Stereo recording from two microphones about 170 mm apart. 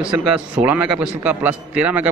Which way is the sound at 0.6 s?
10° right (ahead or behind).